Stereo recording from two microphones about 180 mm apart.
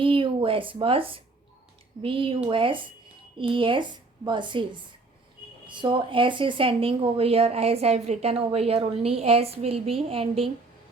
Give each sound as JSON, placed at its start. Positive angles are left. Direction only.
{"t": 0.0, "sound": "speech", "side_deg": -30}